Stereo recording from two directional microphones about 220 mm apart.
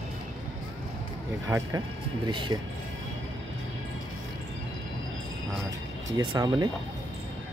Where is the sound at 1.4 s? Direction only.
15° right (ahead or behind).